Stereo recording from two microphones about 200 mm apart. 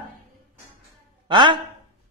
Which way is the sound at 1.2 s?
25° right (ahead or behind).